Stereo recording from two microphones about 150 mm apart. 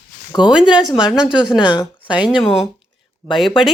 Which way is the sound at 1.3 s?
30° left (ahead or behind).